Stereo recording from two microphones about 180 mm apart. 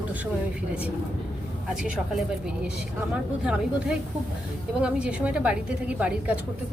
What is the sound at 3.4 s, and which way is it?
A woman's voice, 5° right (ahead or behind).